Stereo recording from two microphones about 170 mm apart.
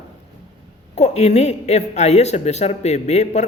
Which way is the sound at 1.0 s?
40° left (ahead or behind).